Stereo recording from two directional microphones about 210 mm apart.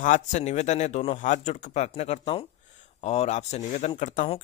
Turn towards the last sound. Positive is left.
turn(degrees=35)  # may be behind; listen again after turning